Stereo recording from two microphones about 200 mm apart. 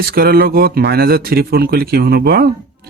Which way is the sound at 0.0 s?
50° right (ahead or behind).